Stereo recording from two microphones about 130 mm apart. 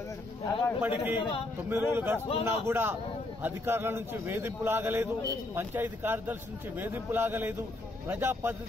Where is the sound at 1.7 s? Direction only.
15° right (ahead or behind).